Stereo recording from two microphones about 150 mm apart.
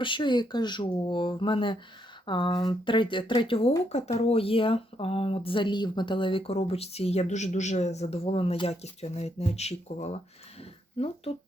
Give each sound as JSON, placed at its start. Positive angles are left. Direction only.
{"t": 0.0, "sound": "speech", "side_deg": 30}